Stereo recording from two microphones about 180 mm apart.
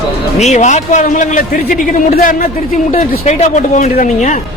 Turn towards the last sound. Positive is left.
turn(degrees=40)  # may be behind; listen again after turning